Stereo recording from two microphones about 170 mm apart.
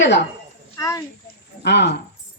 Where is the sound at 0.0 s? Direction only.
90° left.